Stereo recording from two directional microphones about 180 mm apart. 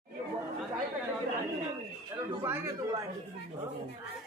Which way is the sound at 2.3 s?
15° right (ahead or behind).